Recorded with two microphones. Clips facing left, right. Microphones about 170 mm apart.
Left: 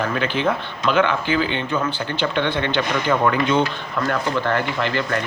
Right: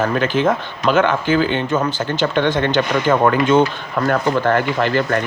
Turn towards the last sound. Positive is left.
turn(degrees=-45)  # may be behind; listen again after turning